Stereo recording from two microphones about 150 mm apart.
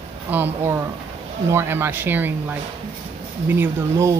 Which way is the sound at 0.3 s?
15° right (ahead or behind).